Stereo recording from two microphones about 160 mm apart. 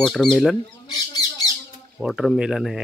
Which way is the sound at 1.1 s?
25° left (ahead or behind).